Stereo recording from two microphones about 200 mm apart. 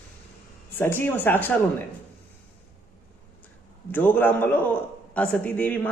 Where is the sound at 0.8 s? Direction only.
10° left (ahead or behind).